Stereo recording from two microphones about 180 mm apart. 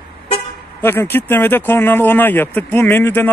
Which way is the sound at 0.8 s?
10° left (ahead or behind).